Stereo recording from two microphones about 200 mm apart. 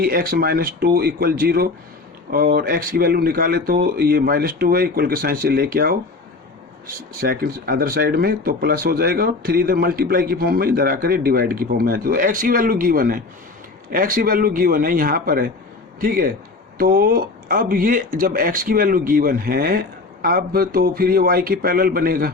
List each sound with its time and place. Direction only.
0.0 s speech: 50° right (ahead or behind)
7.2 s speech: 50° right (ahead or behind)